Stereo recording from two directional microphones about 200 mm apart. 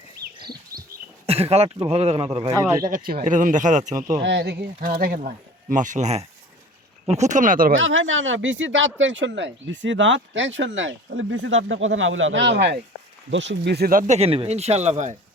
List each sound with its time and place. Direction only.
0.7 s dog: 50° right (ahead or behind)
1.3 s speech: 30° right (ahead or behind)
2.9 s speech: 45° right (ahead or behind)
4.2 s speech: 60° right (ahead or behind); by 7.7 s 45° right (ahead or behind)
7.8 s speech: 75° right (ahead or behind); by 14.0 s 50° right (ahead or behind)
14.1 s speech: 30° right (ahead or behind)